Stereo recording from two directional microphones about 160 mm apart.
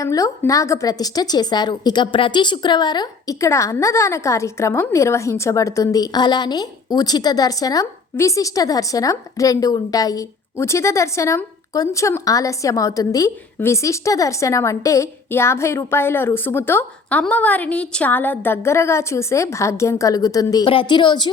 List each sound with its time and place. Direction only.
0.0 s a woman's voice: 20° left (ahead or behind)